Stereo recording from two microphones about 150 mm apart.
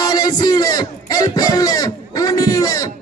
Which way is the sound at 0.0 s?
25° left (ahead or behind).